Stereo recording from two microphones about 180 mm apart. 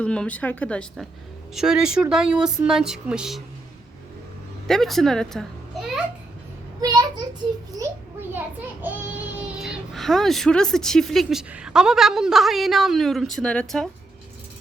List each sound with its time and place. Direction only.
0.0 s a woman's voice: 5° left (ahead or behind)
4.7 s a child's voice: centre (ahead or behind)
6.8 s a child's voice: 20° right (ahead or behind)
8.3 s a child's voice: 10° right (ahead or behind)